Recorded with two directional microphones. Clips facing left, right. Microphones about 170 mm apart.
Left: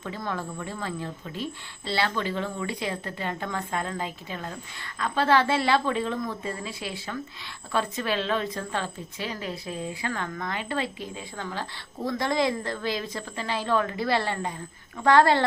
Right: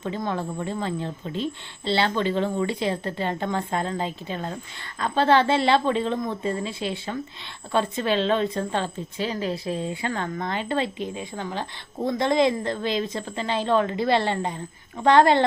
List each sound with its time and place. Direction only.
0.0 s speech: 25° right (ahead or behind)